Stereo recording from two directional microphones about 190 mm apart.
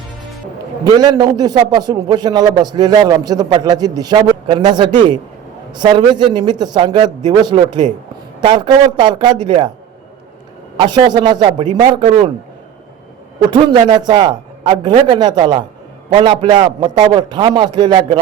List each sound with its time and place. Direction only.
0.9 s a man's voice: 20° right (ahead or behind)
10.8 s a man's voice: 25° right (ahead or behind)
13.5 s a man's voice: 25° right (ahead or behind)